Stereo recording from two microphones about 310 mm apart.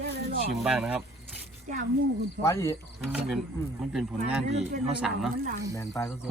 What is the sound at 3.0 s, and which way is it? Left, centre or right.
Speech, centre.